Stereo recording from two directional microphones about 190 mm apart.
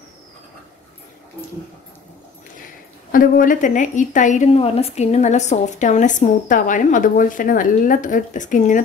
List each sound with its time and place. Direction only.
3.1 s a woman's voice: 45° left (ahead or behind)